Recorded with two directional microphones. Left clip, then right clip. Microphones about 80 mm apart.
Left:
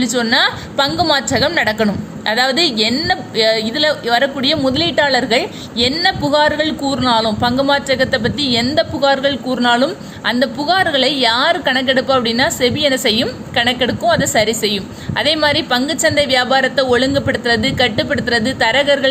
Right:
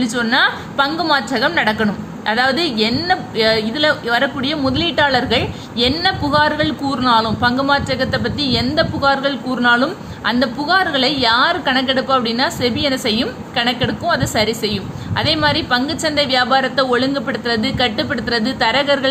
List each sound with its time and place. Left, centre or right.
0.0 s a woman's voice: left